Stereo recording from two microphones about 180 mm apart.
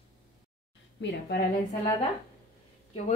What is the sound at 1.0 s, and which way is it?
Speech, 75° left (ahead or behind).